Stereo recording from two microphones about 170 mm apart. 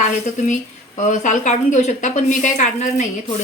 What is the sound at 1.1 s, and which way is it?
A woman's voice, 45° left (ahead or behind).